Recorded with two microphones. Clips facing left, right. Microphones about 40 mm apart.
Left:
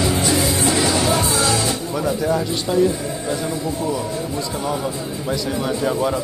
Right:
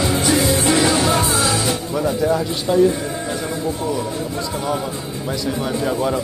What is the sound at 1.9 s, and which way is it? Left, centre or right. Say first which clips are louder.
Music: right 2 dB; centre.